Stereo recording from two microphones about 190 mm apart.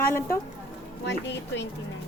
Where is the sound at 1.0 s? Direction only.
65° left (ahead or behind).